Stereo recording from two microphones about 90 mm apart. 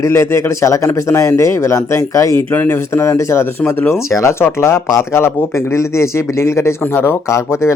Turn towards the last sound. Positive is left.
turn(degrees=30)  # may be behind; listen again after turning